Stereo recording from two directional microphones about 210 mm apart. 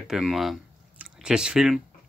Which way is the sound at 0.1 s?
Centre (ahead or behind).